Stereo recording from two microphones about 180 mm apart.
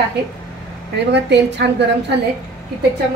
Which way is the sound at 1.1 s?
70° right (ahead or behind).